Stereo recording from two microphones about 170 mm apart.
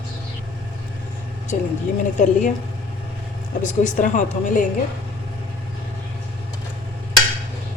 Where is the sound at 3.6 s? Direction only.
45° left (ahead or behind).